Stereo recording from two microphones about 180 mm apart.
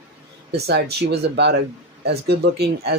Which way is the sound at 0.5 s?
65° right (ahead or behind).